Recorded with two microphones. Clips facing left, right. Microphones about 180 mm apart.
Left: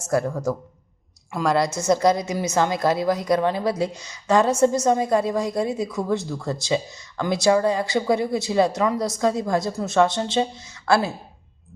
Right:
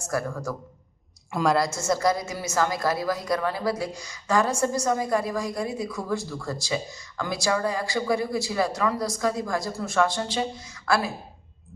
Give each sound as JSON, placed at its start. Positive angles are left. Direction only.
{"t": 0.0, "sound": "a woman's voice", "side_deg": 25}
{"t": 1.3, "sound": "a woman's voice", "side_deg": 0}
{"t": 1.7, "sound": "a woman's voice", "side_deg": 20}